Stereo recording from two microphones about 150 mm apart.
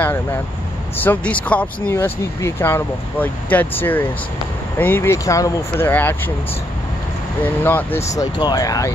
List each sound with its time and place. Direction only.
0.0 s speech: 15° left (ahead or behind)
7.4 s speech: 15° left (ahead or behind)
8.2 s speech: 25° left (ahead or behind)